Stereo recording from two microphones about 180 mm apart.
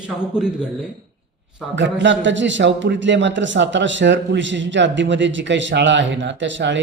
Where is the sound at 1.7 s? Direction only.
80° right.